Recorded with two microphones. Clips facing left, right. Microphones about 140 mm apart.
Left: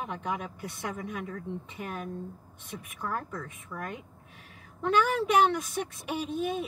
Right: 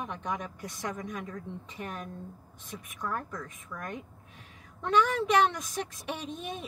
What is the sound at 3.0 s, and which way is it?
Speech, 5° left (ahead or behind).